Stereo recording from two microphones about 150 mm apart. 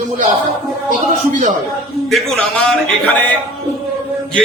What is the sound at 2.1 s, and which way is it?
A man's voice, centre (ahead or behind).